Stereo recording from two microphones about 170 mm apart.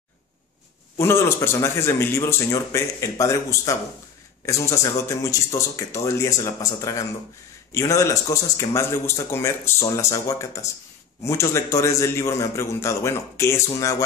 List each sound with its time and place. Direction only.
0.9 s speech: 15° left (ahead or behind)